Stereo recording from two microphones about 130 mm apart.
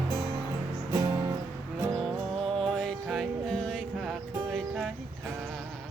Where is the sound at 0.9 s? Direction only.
25° right (ahead or behind).